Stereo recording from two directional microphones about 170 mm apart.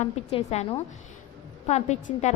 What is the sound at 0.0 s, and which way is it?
A woman's voice, 40° left (ahead or behind).